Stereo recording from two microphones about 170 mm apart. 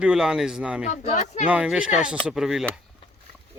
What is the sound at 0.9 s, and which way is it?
Speech, 45° left (ahead or behind).